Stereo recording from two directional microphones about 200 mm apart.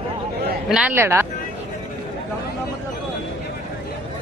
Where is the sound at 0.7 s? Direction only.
5° right (ahead or behind).